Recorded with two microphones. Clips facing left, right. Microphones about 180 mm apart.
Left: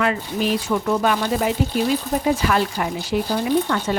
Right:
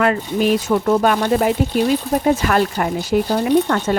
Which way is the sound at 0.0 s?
50° right (ahead or behind).